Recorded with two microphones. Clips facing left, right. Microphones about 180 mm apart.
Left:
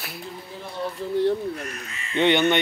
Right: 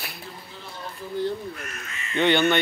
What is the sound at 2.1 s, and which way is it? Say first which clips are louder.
Speech: left 1 dB; 20° left (ahead or behind).